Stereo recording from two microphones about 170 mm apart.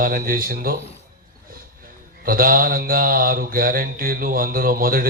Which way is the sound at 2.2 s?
55° right (ahead or behind).